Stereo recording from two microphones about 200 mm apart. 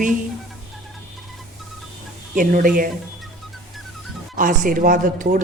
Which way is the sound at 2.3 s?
45° right (ahead or behind).